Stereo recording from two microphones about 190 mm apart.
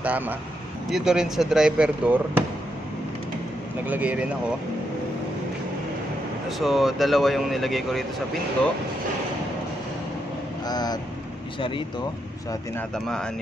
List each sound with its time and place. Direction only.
0.0 s speech: 10° right (ahead or behind)
3.8 s speech: 10° right (ahead or behind)
6.6 s speech: centre (ahead or behind)
10.7 s speech: 20° left (ahead or behind)
12.7 s speech: 5° left (ahead or behind)